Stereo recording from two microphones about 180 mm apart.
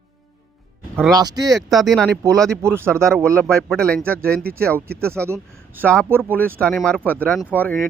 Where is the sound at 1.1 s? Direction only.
20° right (ahead or behind).